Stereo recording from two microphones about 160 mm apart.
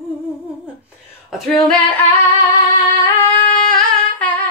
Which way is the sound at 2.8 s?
20° left (ahead or behind).